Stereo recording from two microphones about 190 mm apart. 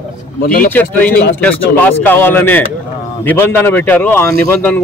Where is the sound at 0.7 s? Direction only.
10° left (ahead or behind).